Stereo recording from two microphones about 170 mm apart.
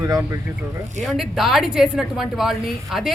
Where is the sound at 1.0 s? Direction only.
Centre (ahead or behind).